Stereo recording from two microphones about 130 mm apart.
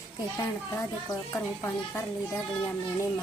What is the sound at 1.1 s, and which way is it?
Speech, 20° left (ahead or behind).